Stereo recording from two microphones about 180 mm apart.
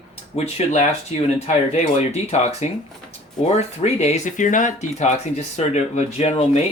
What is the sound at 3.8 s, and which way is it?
Speech, 40° left (ahead or behind).